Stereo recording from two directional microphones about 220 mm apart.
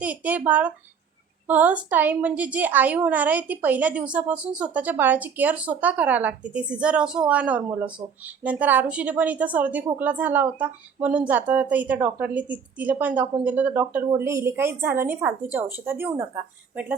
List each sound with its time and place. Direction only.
0.0 s a woman's voice: 5° right (ahead or behind)